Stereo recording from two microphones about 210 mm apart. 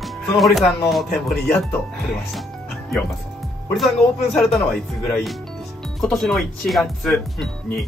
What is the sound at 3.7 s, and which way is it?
Speech, centre (ahead or behind).